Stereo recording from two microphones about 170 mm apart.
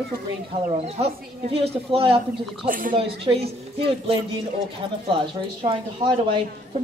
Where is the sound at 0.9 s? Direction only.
35° right (ahead or behind).